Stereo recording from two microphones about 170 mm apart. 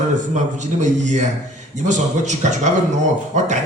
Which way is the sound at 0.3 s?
45° right (ahead or behind).